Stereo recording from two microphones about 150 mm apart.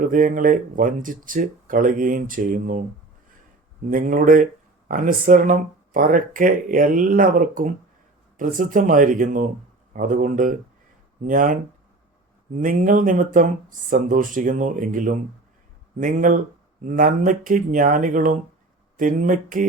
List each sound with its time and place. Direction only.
0.0 s speech: 65° right (ahead or behind)
3.8 s speech: 65° right (ahead or behind)
12.5 s speech: 60° right (ahead or behind)